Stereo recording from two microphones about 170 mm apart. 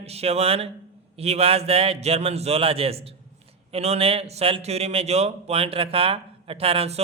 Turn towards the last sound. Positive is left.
turn(degrees=-35)  # may be behind; listen again after turning